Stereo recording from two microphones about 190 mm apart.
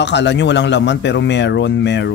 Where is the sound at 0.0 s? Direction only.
65° left (ahead or behind).